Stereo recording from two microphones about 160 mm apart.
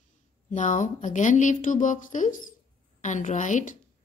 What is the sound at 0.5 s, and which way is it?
A woman's voice, 50° left (ahead or behind).